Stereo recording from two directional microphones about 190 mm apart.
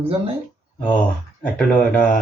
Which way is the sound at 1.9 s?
5° left (ahead or behind).